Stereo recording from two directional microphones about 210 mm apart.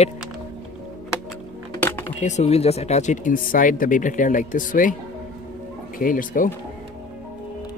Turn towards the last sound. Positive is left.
turn(degrees=40)  # may be behind; listen again after turning